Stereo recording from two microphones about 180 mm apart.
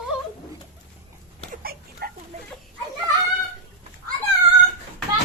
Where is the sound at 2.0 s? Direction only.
60° right (ahead or behind).